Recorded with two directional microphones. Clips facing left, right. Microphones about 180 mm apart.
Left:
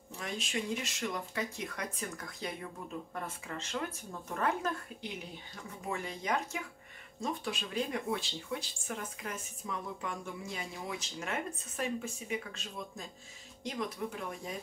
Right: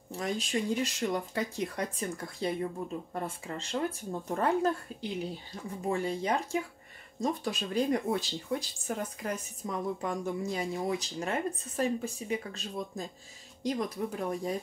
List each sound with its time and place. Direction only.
0.2 s speech: 35° right (ahead or behind)
5.9 s speech: 30° right (ahead or behind)